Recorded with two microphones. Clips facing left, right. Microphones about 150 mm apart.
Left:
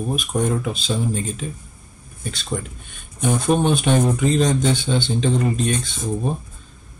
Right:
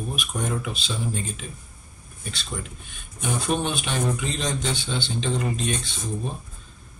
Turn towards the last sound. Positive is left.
turn(degrees=45)  # may be behind; listen again after turning